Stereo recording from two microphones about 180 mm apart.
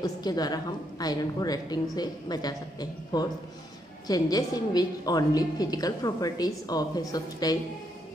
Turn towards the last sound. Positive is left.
turn(degrees=20)  # may be behind; listen again after turning